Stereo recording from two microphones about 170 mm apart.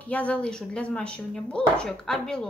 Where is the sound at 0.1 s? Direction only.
10° left (ahead or behind).